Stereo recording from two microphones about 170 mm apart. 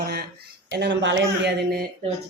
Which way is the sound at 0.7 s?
90° right.